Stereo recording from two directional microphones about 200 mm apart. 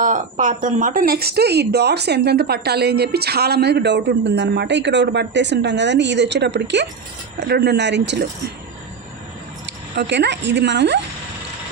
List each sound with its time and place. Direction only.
0.0 s speech: 40° right (ahead or behind); by 8.3 s 60° right (ahead or behind)
9.9 s speech: 60° right (ahead or behind)